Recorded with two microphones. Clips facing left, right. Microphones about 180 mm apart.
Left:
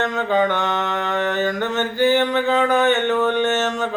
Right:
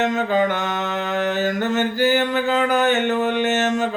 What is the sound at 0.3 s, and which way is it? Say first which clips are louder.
Mantra: left 1 dB; 5° right (ahead or behind).